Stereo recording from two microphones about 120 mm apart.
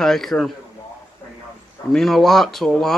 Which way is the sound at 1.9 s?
5° left (ahead or behind).